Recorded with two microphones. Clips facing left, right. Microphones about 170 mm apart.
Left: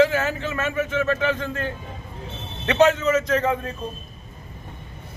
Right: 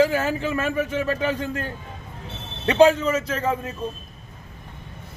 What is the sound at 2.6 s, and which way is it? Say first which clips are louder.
Speech: right 2 dB; 30° right (ahead or behind).